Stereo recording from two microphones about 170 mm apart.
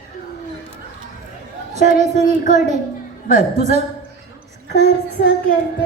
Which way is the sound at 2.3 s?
50° left (ahead or behind).